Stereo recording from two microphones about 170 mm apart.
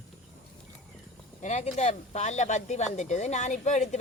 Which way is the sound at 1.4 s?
45° left (ahead or behind).